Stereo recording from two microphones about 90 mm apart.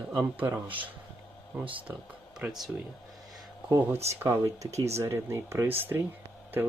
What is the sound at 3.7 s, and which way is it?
Speech, 25° right (ahead or behind).